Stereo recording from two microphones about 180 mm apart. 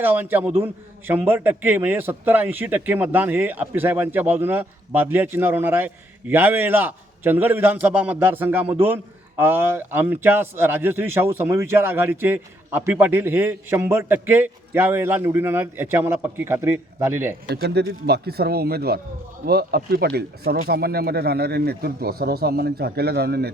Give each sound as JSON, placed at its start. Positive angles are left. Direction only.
{"t": 0.0, "sound": "a man's voice", "side_deg": -10}
{"t": 17.5, "sound": "speech", "side_deg": -65}